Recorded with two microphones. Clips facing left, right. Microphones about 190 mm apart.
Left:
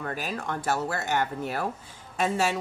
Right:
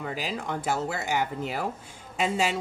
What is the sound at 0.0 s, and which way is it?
A woman's voice, 10° right (ahead or behind).